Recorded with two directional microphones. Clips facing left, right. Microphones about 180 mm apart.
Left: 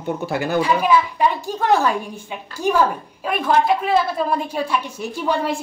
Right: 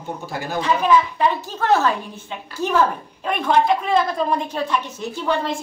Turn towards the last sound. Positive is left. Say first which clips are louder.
# left 1 dB
turn(degrees=10)  # may be behind; listen again after turning